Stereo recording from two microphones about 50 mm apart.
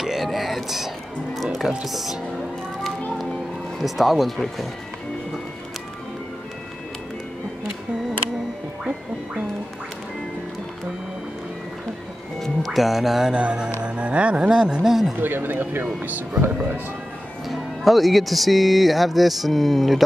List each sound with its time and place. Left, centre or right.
0.0 s music: centre
1.9 s speech: centre
3.8 s speech: centre
12.4 s music: centre
13.3 s speech: right
15.1 s speech: right
17.5 s speech: centre